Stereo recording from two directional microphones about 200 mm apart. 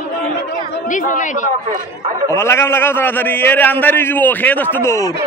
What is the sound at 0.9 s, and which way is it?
Speech, 40° left (ahead or behind).